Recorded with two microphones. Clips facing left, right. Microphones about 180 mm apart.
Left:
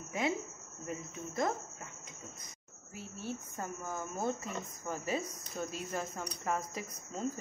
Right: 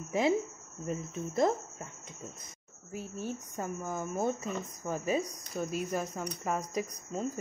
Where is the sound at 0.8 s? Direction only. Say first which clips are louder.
Right 6 dB; 25° right (ahead or behind).